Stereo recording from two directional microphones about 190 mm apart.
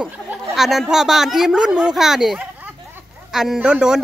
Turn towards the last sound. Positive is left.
turn(degrees=-5)  # may be behind; listen again after turning